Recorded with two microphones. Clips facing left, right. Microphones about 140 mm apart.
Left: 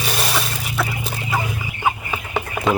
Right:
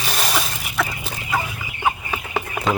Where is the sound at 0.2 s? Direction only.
Centre (ahead or behind).